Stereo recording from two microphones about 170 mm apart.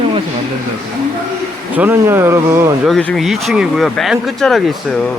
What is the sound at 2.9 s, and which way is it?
Speech, 5° left (ahead or behind).